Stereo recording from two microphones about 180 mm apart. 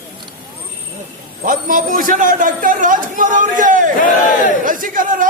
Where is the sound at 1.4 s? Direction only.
50° right (ahead or behind).